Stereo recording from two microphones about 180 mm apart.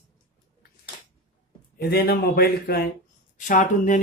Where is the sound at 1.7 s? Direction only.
55° left (ahead or behind).